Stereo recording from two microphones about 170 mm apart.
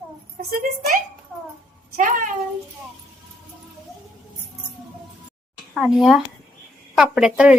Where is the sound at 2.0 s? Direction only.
50° right (ahead or behind).